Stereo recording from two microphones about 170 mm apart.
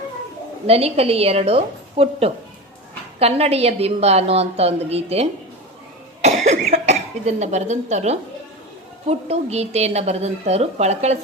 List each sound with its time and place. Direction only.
0.7 s a woman's voice: 35° right (ahead or behind)